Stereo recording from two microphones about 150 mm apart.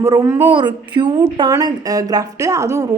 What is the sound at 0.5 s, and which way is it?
A woman's voice, 30° right (ahead or behind).